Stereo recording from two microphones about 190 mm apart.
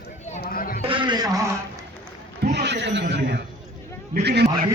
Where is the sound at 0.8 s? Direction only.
25° right (ahead or behind).